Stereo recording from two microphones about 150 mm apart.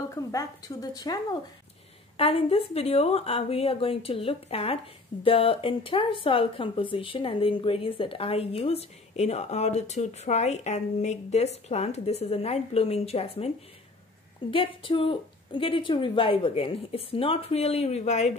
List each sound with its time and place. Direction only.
0.1 s speech: 25° left (ahead or behind)
2.1 s speech: 40° left (ahead or behind)
14.5 s speech: 35° left (ahead or behind)